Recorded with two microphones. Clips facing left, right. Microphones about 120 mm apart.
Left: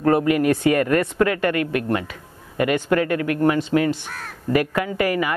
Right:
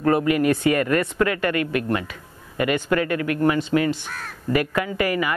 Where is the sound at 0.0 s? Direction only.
45° left (ahead or behind).